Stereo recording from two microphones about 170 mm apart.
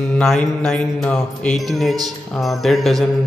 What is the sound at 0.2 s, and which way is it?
Mantra, centre (ahead or behind).